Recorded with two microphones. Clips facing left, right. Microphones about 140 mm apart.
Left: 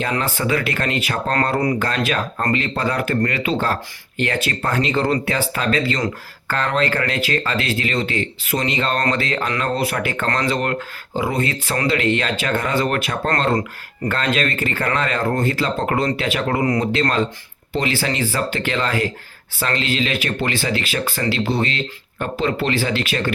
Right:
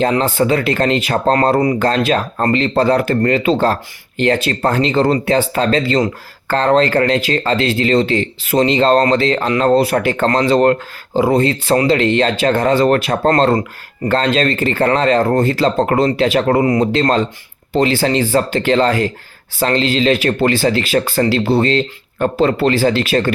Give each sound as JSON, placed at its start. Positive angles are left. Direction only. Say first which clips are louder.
{"t": 0.0, "sound": "speech", "louder": "right 8 dB", "side_deg": -30}